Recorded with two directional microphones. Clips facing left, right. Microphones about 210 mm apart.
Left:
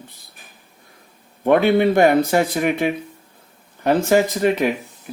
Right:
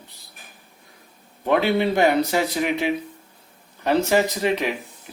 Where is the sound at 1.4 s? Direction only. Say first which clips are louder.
Left 5 dB; 50° left (ahead or behind).